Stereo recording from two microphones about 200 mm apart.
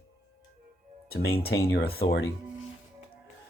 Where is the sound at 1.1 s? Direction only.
50° left (ahead or behind).